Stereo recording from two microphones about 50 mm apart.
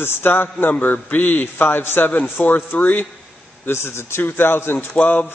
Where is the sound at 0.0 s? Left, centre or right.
Left.